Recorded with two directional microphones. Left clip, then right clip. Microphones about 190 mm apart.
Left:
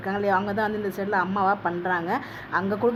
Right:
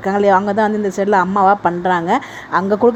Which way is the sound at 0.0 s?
40° right (ahead or behind).